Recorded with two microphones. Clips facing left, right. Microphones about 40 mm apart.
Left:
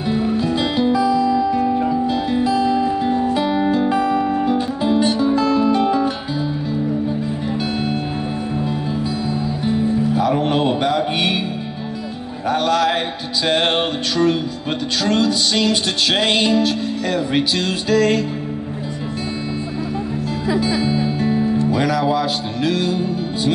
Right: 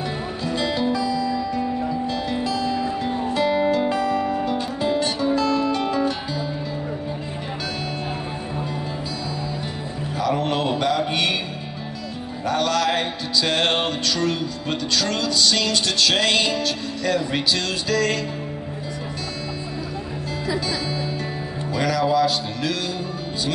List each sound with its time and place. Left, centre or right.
0.1 s music: centre
10.1 s mantra: centre
12.4 s music: centre
20.5 s music: left